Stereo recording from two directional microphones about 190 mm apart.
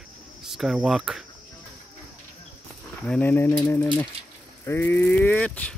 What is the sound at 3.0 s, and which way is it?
Speech, 10° left (ahead or behind).